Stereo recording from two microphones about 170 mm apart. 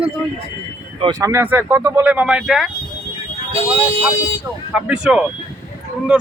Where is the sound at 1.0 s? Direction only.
20° right (ahead or behind); by 2.7 s centre (ahead or behind).